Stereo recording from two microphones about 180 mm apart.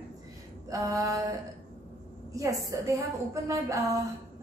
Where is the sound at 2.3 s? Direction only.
20° right (ahead or behind).